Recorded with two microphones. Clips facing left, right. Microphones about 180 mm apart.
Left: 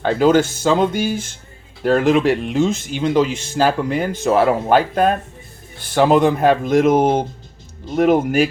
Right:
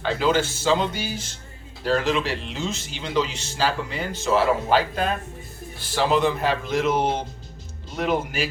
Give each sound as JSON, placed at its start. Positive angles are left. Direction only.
{"t": 0.0, "sound": "speech", "side_deg": 50}